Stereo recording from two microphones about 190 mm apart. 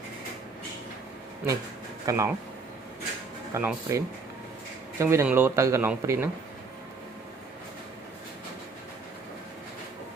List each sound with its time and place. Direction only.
2.0 s speech: 15° right (ahead or behind)
3.5 s speech: 10° right (ahead or behind)